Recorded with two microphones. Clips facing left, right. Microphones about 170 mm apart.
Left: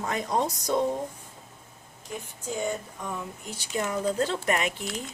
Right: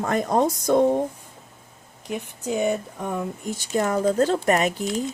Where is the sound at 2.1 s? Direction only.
70° right (ahead or behind).